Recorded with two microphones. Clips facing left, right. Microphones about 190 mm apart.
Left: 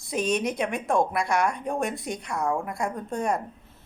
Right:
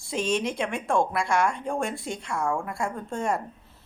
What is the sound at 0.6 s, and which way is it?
Speech, 20° left (ahead or behind).